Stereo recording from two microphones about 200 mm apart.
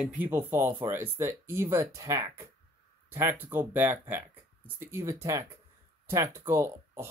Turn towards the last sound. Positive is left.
turn(degrees=-15)  # may be behind; listen again after turning